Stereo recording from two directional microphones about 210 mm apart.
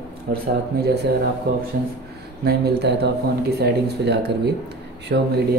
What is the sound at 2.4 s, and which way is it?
Speech, 50° right (ahead or behind).